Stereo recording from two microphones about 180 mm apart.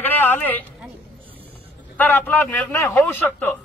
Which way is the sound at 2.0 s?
10° left (ahead or behind).